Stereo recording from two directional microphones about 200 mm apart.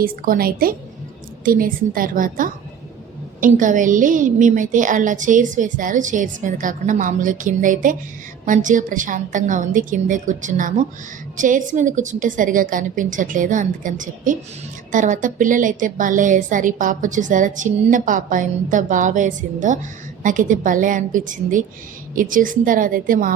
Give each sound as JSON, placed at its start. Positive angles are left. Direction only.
{"t": 0.0, "sound": "a woman's voice", "side_deg": -45}